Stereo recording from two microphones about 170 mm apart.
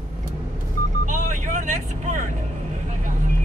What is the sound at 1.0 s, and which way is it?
Vehicle, 50° right (ahead or behind).